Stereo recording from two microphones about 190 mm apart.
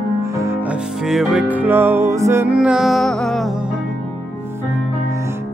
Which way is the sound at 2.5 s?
5° right (ahead or behind).